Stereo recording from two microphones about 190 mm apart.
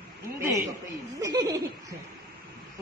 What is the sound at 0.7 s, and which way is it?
Speech, 20° right (ahead or behind).